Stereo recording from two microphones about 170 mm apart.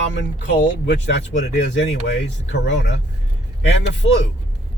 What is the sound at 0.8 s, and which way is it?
Speech, 90° left.